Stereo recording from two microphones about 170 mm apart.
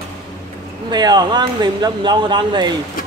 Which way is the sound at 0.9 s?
25° right (ahead or behind).